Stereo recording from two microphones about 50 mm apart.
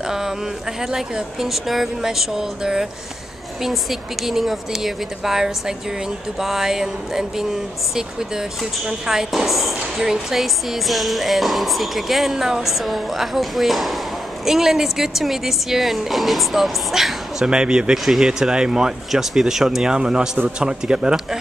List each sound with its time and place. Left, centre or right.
0.0 s a sound: centre
0.7 s speech: centre
17.5 s speech: centre
17.9 s speech: centre